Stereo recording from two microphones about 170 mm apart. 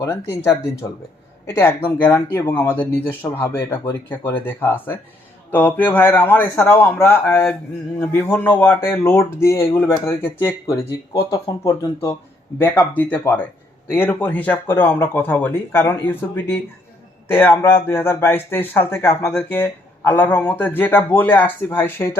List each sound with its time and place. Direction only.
0.0 s speech: 15° left (ahead or behind)